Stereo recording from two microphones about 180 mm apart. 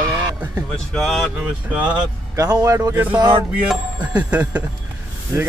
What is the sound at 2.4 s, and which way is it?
Speech, 20° right (ahead or behind).